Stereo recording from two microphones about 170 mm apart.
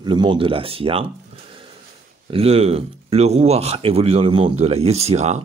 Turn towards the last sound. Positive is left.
turn(degrees=-40)  # may be behind; listen again after turning